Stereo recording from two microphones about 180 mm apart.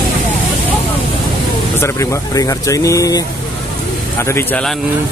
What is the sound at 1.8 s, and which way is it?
Speech, 15° left (ahead or behind).